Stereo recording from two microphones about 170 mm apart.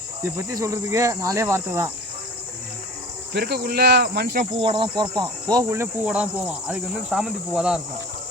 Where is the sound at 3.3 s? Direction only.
70° right (ahead or behind).